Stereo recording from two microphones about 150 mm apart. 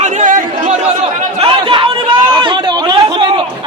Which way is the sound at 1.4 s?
35° right (ahead or behind).